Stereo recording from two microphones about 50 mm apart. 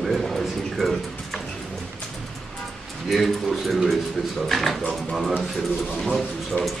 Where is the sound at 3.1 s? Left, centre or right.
Centre.